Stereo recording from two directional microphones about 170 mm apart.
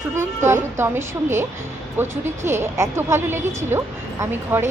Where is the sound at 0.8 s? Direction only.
15° right (ahead or behind).